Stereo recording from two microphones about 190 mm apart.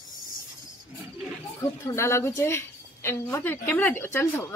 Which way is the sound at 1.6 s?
15° left (ahead or behind).